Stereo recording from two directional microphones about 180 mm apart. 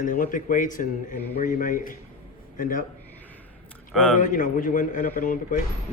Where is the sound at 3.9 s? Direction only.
5° left (ahead or behind).